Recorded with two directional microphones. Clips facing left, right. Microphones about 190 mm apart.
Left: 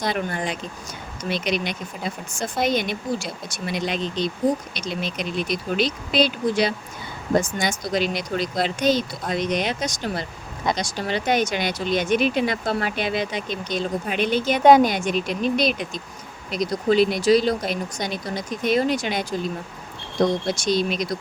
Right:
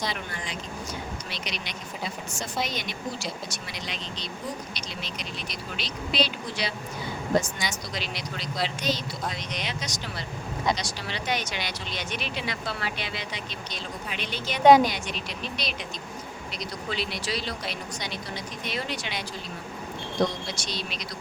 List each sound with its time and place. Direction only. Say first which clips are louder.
0.0 s speech: left 8 dB; 50° left (ahead or behind)
20.6 s speech: left 13 dB; 50° left (ahead or behind)